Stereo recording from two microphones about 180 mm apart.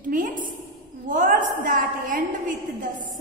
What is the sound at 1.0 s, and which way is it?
A woman's voice, 45° right (ahead or behind).